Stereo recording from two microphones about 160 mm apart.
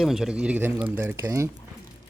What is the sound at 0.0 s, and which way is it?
Speech, centre (ahead or behind).